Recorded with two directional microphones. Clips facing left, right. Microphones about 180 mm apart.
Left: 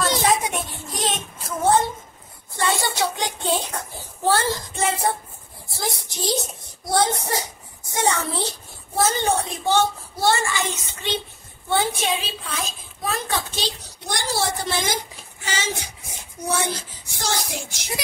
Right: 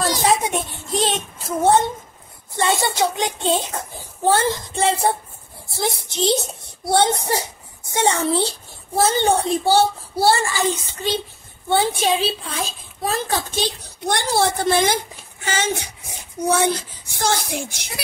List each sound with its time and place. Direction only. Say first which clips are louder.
0.2 s child singing: right 2 dB; 30° right (ahead or behind)
2.6 s a child's voice: right 3 dB; 25° right (ahead or behind)
13.6 s speech: right 5 dB; 55° right (ahead or behind)
17.2 s speech: right 5 dB; 55° right (ahead or behind)